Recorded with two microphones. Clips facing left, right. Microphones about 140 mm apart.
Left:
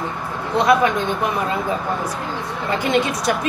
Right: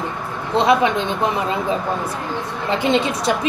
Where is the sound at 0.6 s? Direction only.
25° right (ahead or behind).